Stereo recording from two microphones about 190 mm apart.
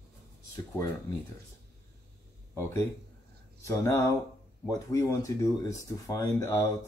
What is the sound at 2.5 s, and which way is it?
Speech, 15° left (ahead or behind).